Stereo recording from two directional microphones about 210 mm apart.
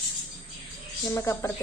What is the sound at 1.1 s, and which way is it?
Speech, 10° left (ahead or behind).